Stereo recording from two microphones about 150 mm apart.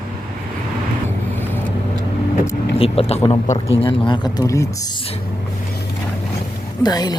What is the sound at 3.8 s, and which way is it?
Speech, 30° left (ahead or behind).